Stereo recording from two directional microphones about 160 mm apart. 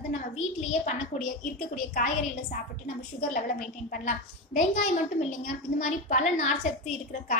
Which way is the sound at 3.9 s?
55° left (ahead or behind).